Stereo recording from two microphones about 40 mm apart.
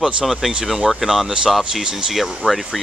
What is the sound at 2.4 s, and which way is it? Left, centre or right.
Speech, right.